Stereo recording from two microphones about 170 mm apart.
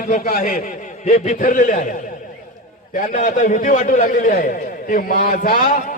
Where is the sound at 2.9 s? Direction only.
55° left (ahead or behind).